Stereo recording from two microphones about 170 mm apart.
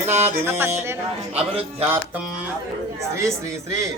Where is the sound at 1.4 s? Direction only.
35° right (ahead or behind).